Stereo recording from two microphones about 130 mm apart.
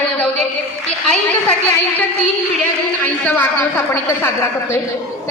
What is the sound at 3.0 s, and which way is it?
A woman's voice, 15° left (ahead or behind).